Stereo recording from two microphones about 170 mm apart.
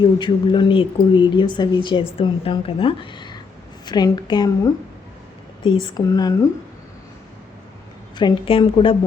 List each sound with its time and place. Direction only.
0.0 s speech: 25° left (ahead or behind)
5.8 s speech: 20° left (ahead or behind)
8.1 s a woman's voice: 30° left (ahead or behind)